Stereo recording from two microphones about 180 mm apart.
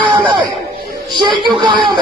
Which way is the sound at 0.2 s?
25° right (ahead or behind).